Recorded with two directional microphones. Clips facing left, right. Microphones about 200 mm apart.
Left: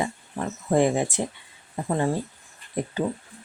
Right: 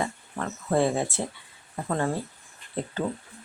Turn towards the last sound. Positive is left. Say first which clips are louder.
# left 3 dB
turn(degrees=10)  # may be behind; listen again after turning